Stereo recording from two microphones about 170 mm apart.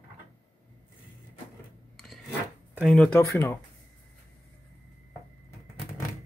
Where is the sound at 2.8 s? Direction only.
5° left (ahead or behind).